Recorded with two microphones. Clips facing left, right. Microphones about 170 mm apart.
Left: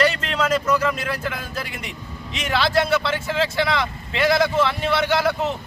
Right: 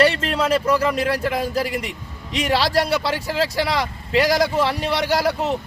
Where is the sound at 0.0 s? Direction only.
30° right (ahead or behind).